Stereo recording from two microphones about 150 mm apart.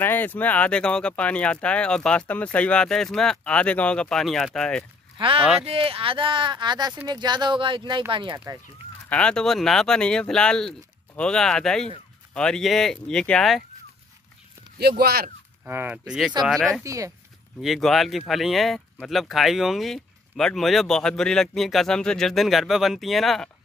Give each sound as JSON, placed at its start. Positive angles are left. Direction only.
{"t": 0.0, "sound": "speech", "side_deg": 15}
{"t": 5.1, "sound": "speech", "side_deg": -35}
{"t": 9.1, "sound": "speech", "side_deg": 5}
{"t": 14.8, "sound": "speech", "side_deg": -90}
{"t": 15.6, "sound": "speech", "side_deg": -15}
{"t": 16.4, "sound": "speech", "side_deg": 0}
{"t": 16.8, "sound": "speech", "side_deg": -20}
{"t": 17.6, "sound": "speech", "side_deg": 0}